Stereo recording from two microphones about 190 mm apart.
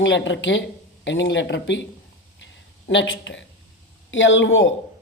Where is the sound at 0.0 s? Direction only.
75° left (ahead or behind).